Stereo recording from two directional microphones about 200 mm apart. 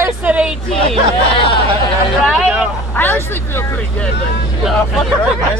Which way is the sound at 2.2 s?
5° right (ahead or behind).